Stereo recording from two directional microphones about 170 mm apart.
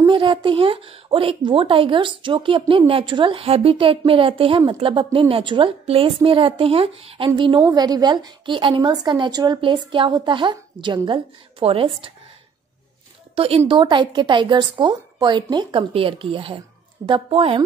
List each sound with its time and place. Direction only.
0.0 s a woman's voice: 30° right (ahead or behind)
13.4 s a woman's voice: 35° right (ahead or behind)